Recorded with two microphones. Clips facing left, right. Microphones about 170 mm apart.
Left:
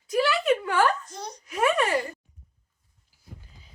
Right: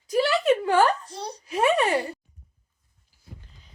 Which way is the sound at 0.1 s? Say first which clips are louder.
Right 2 dB; 35° right (ahead or behind).